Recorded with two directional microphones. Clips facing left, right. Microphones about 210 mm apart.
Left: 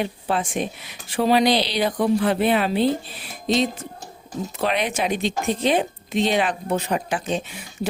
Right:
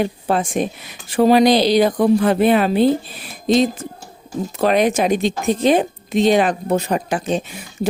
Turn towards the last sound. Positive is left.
turn(degrees=-40)  # may be behind; listen again after turning